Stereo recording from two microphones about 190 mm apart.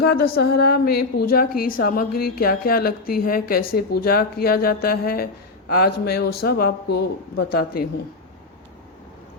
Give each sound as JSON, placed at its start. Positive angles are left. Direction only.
{"t": 0.0, "sound": "a woman's voice", "side_deg": 55}